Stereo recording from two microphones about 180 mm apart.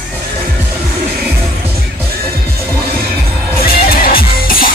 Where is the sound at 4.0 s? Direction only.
55° left (ahead or behind).